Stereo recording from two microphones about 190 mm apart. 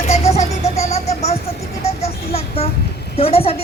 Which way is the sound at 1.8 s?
35° left (ahead or behind).